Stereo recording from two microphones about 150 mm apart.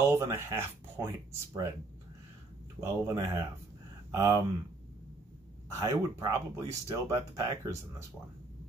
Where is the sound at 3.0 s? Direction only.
20° right (ahead or behind).